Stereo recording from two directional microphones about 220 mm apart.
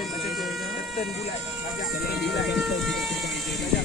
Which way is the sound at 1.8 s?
45° left (ahead or behind).